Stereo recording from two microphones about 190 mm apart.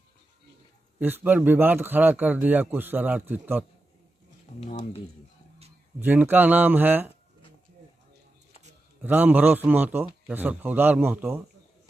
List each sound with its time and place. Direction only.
0.9 s a man's voice: 10° right (ahead or behind)
4.6 s speech: 30° left (ahead or behind)
5.9 s a man's voice: 10° right (ahead or behind)
9.0 s a man's voice: 10° right (ahead or behind)